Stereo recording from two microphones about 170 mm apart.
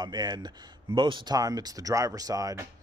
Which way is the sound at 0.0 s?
25° right (ahead or behind).